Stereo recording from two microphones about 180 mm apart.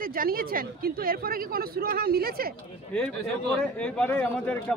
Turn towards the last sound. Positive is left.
turn(degrees=10)  # may be behind; listen again after turning